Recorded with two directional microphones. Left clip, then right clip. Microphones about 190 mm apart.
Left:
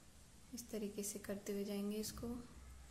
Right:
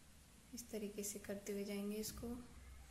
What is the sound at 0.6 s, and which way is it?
A woman's voice, 20° left (ahead or behind).